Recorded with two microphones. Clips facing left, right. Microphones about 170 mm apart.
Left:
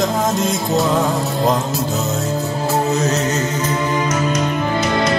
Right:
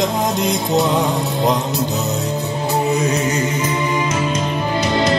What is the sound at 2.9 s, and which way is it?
Music, 15° right (ahead or behind).